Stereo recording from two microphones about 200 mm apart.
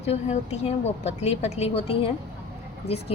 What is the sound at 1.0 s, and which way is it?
Speech, 35° left (ahead or behind).